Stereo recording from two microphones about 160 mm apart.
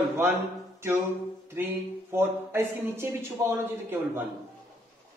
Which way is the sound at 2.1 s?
15° right (ahead or behind).